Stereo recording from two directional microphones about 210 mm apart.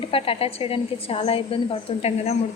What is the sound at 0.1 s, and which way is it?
A woman's voice, 25° left (ahead or behind).